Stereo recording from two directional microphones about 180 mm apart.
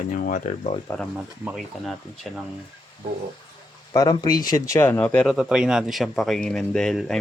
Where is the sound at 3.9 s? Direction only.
25° left (ahead or behind); by 7.2 s 5° left (ahead or behind).